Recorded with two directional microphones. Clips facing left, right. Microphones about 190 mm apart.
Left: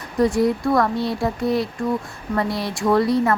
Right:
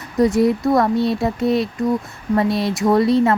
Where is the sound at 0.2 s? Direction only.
25° right (ahead or behind).